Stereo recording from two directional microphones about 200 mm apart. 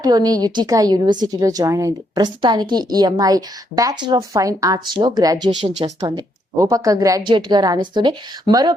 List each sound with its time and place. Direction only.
0.0 s a woman's voice: 20° right (ahead or behind)